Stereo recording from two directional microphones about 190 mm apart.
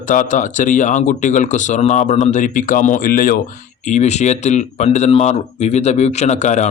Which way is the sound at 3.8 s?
40° left (ahead or behind).